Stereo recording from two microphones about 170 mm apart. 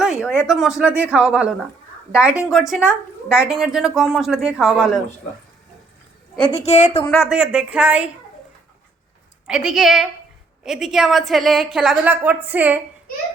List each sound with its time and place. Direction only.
0.0 s a sound: 5° right (ahead or behind)
0.4 s a woman's voice: centre (ahead or behind)
6.4 s a woman's voice: 35° left (ahead or behind)
7.2 s speech: 5° right (ahead or behind)
9.5 s a woman's voice: 5° right (ahead or behind)